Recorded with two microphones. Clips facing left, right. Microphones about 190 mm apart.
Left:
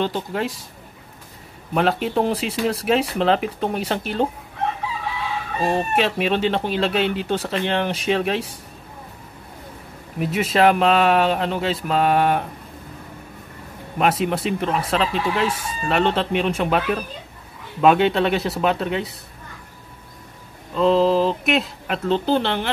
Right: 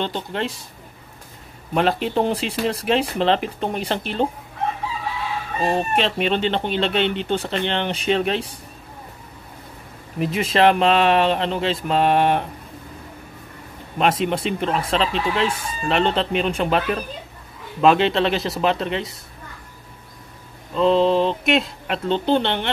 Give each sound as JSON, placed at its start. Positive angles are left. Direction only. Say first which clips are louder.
{"t": 0.0, "sound": "speech", "louder": "left 2 dB", "side_deg": 5}
{"t": 1.7, "sound": "speech", "louder": "even", "side_deg": 0}
{"t": 5.6, "sound": "speech", "louder": "even", "side_deg": 0}
{"t": 10.1, "sound": "speech", "louder": "even", "side_deg": 5}
{"t": 13.9, "sound": "speech", "louder": "even", "side_deg": 5}
{"t": 20.7, "sound": "speech", "louder": "even", "side_deg": 0}